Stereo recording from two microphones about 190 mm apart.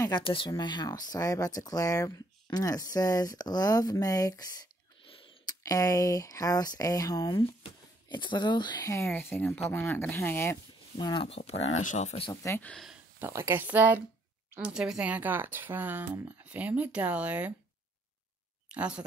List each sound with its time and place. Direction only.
0.0 s speech: 25° left (ahead or behind)
5.0 s a sound: 30° left (ahead or behind)
5.6 s speech: 20° left (ahead or behind); by 12.3 s 35° left (ahead or behind)
12.3 s speech: 15° left (ahead or behind)
13.2 s speech: 15° right (ahead or behind)
18.7 s speech: 5° right (ahead or behind)